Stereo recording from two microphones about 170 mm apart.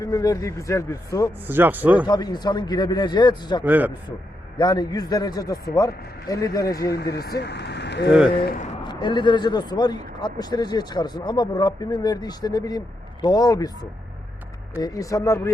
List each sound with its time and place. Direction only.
0.0 s speech: 20° left (ahead or behind)
1.5 s a man's voice: 10° right (ahead or behind)
2.0 s speech: 25° left (ahead or behind)
3.6 s a man's voice: 10° right (ahead or behind)
4.5 s speech: 25° left (ahead or behind)
6.9 s speech: 70° left (ahead or behind); by 8.1 s 85° left
8.8 s speech: 25° left (ahead or behind)
14.8 s speech: 20° left (ahead or behind)